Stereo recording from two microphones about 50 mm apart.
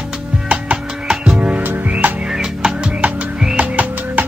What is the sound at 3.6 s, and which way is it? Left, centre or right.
Music, right.